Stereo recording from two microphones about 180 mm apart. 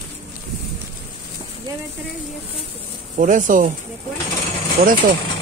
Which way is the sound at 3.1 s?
45° right (ahead or behind).